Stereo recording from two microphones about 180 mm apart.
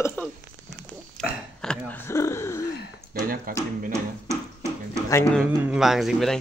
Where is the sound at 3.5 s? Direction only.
50° right (ahead or behind).